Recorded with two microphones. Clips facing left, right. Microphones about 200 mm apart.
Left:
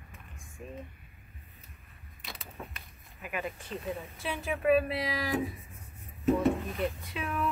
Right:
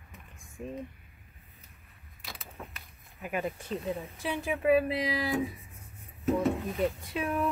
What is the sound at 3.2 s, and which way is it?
Speech, 35° right (ahead or behind).